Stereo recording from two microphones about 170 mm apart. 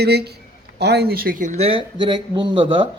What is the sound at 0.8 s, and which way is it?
Speech, 75° right (ahead or behind).